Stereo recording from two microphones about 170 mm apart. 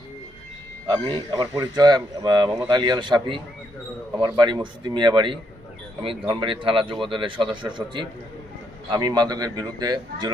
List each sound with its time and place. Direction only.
0.9 s speech: 25° right (ahead or behind)